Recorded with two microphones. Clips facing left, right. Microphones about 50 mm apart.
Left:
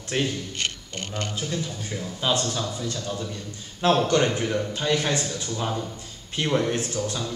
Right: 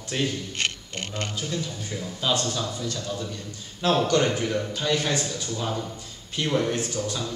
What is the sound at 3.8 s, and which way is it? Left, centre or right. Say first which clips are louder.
Speech: left 2 dB; left.